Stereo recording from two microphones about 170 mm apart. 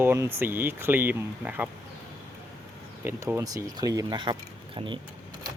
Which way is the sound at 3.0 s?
15° right (ahead or behind).